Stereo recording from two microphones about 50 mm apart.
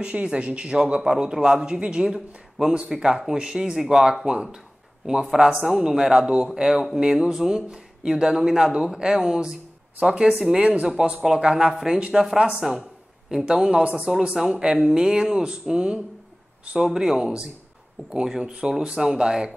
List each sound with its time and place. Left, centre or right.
0.0 s speech: right
13.3 s speech: centre
13.6 s speech: centre
16.7 s speech: centre